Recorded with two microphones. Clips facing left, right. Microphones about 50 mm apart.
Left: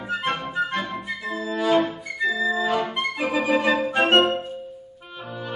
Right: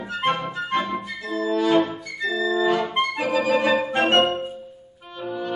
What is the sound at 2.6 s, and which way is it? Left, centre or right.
Accordion, centre.